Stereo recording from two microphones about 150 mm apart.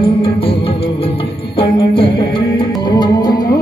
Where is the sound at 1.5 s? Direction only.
35° left (ahead or behind).